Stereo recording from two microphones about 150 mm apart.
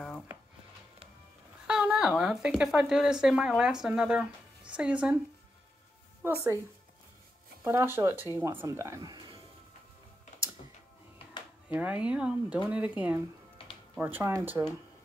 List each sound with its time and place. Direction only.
1.7 s speech: 5° right (ahead or behind)
6.2 s speech: 15° right (ahead or behind)
7.6 s speech: 15° right (ahead or behind)
11.7 s speech: 10° right (ahead or behind)
13.6 s music: 40° left (ahead or behind)
13.9 s speech: 10° right (ahead or behind)